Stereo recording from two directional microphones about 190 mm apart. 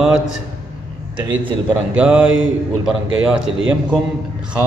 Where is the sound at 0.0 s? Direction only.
5° right (ahead or behind).